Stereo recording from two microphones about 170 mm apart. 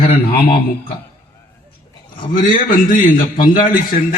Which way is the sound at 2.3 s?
50° left (ahead or behind).